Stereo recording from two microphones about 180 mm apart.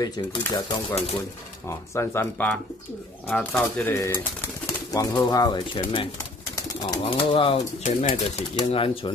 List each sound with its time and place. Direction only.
0.5 s speech: 25° left (ahead or behind)
1.7 s speech: 15° left (ahead or behind)
7.8 s speech: 40° left (ahead or behind)
8.5 s speech: 30° left (ahead or behind)